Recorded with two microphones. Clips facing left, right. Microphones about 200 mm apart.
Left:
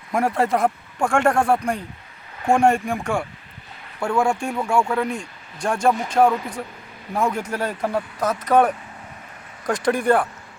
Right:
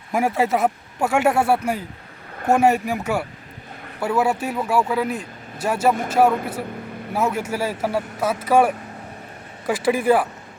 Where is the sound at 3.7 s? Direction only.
50° right (ahead or behind).